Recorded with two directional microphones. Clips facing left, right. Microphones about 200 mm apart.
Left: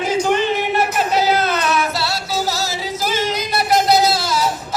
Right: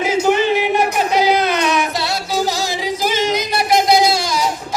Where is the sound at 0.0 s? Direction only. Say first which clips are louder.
Right 2 dB; 10° right (ahead or behind).